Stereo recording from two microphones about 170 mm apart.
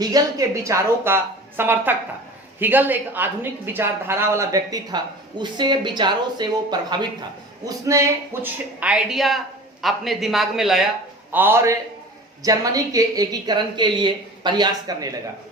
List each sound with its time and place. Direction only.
0.0 s a woman's voice: 20° right (ahead or behind)